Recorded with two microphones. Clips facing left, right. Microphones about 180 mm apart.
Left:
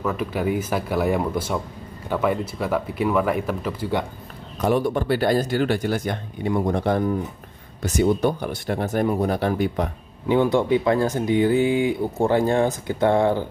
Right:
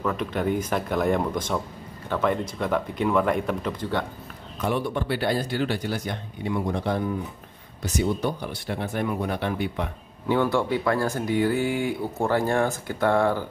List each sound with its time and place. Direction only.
0.0 s speech: 5° left (ahead or behind)
4.6 s speech: 40° left (ahead or behind)
10.2 s speech: 20° left (ahead or behind)